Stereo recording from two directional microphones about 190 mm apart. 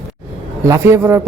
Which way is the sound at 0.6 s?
15° right (ahead or behind).